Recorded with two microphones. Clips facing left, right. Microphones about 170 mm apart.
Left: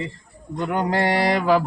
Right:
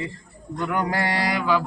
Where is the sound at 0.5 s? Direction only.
20° left (ahead or behind).